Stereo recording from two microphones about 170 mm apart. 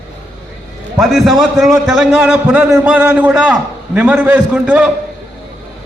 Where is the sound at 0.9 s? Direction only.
Centre (ahead or behind).